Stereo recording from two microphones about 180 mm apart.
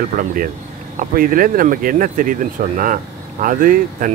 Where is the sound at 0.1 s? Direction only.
50° right (ahead or behind).